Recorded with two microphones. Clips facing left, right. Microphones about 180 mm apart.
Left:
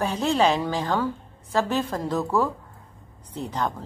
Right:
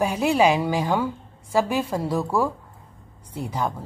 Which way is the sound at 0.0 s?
10° right (ahead or behind).